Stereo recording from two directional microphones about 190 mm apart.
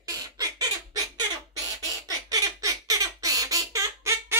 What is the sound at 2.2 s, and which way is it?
Squawk, 20° right (ahead or behind).